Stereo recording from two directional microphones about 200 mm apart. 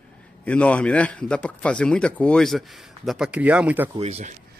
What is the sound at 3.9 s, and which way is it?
Speech, 30° right (ahead or behind).